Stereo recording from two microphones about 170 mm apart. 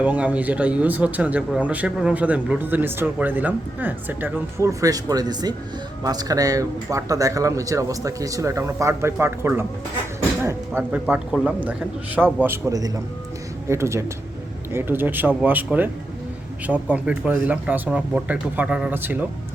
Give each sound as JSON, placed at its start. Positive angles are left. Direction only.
{"t": 0.0, "sound": "speech", "side_deg": -10}
{"t": 10.4, "sound": "a sound", "side_deg": -15}
{"t": 11.0, "sound": "speech", "side_deg": -5}